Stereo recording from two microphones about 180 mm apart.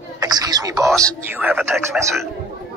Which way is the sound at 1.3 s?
10° right (ahead or behind).